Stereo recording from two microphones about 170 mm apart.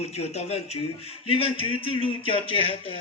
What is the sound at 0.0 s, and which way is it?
Speech, 40° left (ahead or behind).